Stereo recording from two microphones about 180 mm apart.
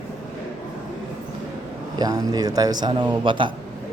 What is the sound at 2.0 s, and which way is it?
A man's voice, 20° right (ahead or behind).